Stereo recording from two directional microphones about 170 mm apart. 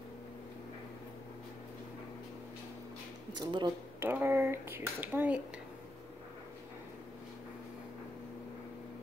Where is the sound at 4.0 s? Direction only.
15° right (ahead or behind).